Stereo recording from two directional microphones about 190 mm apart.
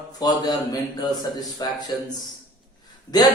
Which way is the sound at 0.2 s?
20° left (ahead or behind).